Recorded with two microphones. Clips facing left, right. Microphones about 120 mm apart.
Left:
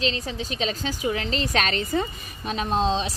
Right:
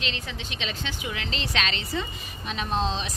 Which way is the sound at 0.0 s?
35° left (ahead or behind).